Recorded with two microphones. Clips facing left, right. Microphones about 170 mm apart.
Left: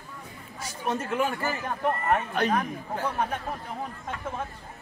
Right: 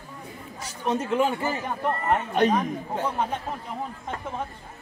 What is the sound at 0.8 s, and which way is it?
Speech, 20° right (ahead or behind).